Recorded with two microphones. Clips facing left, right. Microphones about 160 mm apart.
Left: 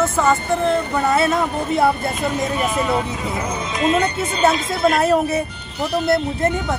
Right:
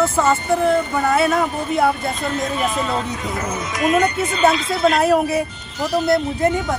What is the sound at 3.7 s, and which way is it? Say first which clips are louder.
Speech: right 1 dB; 25° left (ahead or behind).